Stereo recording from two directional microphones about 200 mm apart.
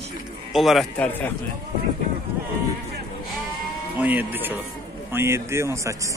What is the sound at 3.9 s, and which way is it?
Speech, 10° right (ahead or behind).